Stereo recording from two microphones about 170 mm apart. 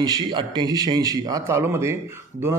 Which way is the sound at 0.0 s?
25° right (ahead or behind).